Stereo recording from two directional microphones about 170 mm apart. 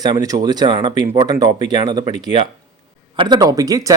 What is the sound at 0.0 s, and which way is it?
Speech, 25° right (ahead or behind).